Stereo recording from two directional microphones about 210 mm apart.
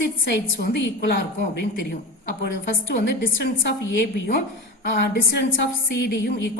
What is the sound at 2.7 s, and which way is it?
A woman's voice, 45° left (ahead or behind).